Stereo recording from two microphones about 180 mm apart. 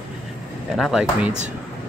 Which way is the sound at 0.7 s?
Centre (ahead or behind).